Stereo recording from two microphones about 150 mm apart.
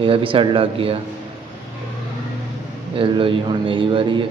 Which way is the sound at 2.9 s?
35° right (ahead or behind).